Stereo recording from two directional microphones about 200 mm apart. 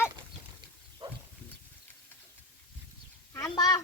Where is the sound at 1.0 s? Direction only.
20° right (ahead or behind).